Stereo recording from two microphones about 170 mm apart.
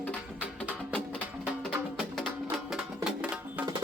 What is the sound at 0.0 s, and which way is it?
Music, 10° left (ahead or behind).